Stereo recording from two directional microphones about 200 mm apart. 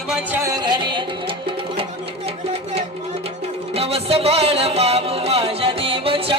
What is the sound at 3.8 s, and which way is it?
Music, 30° right (ahead or behind).